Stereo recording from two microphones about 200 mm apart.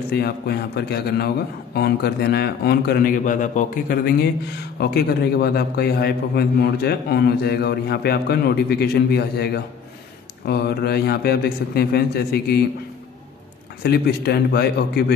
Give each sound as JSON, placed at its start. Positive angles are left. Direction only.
{"t": 0.1, "sound": "a man's voice", "side_deg": 55}
{"t": 13.8, "sound": "a man's voice", "side_deg": 55}